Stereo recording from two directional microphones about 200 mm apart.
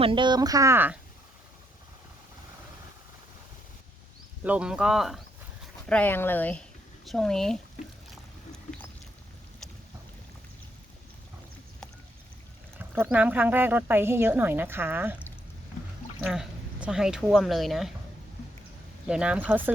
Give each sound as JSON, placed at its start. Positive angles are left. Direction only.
{"t": 0.0, "sound": "speech", "side_deg": -25}
{"t": 4.4, "sound": "speech", "side_deg": -5}
{"t": 12.9, "sound": "speech", "side_deg": -5}
{"t": 16.2, "sound": "speech", "side_deg": -5}
{"t": 19.0, "sound": "speech", "side_deg": -5}